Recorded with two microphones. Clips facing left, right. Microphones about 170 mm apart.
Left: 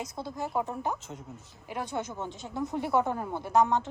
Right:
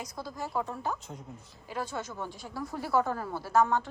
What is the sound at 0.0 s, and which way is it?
Speech, 25° left (ahead or behind).